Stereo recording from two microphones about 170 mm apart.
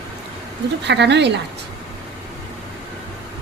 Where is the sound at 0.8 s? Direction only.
90° right.